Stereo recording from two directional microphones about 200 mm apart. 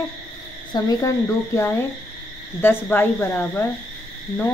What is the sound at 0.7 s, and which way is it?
Speech, 15° left (ahead or behind).